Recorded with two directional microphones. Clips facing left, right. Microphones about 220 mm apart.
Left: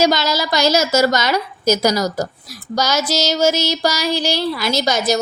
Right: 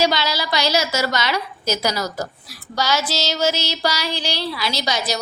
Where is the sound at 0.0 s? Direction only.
45° left (ahead or behind).